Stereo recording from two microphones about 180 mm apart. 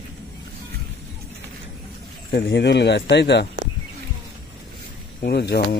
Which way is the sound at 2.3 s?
70° left (ahead or behind).